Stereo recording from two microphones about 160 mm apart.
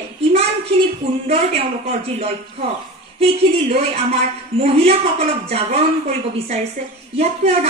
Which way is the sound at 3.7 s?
40° right (ahead or behind).